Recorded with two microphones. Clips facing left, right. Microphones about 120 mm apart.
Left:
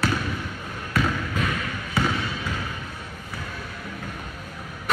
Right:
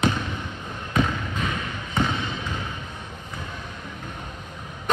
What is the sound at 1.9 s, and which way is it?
Basketball bounce, 20° right (ahead or behind).